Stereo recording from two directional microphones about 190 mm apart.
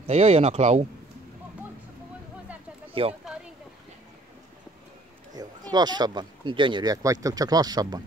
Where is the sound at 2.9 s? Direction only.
30° right (ahead or behind).